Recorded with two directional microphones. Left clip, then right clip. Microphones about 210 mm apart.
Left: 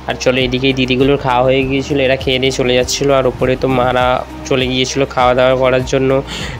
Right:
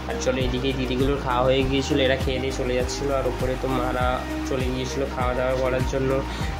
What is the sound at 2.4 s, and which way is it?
Speech, 45° left (ahead or behind).